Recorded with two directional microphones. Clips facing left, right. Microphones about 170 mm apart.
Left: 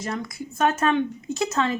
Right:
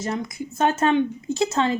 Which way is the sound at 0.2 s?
25° right (ahead or behind).